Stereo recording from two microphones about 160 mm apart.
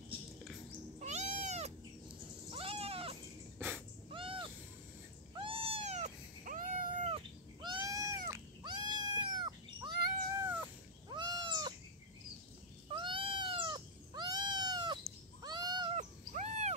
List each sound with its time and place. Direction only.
0.9 s cat: 45° right (ahead or behind)
2.0 s cat: 35° right (ahead or behind)
3.5 s a sound: 10° right (ahead or behind)
4.1 s a sound: 35° right (ahead or behind)
5.3 s cat: 35° right (ahead or behind); by 7.1 s 55° right (ahead or behind)
7.1 s cat: 35° right (ahead or behind)
10.4 s cat: 10° right (ahead or behind)
11.1 s cat: 30° right (ahead or behind)
12.9 s cat: 35° right (ahead or behind)
15.9 s wild animals: 45° right (ahead or behind)